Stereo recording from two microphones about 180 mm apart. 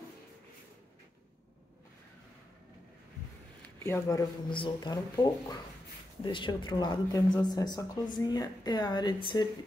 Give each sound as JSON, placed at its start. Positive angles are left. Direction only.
{"t": 3.8, "sound": "speech", "side_deg": 15}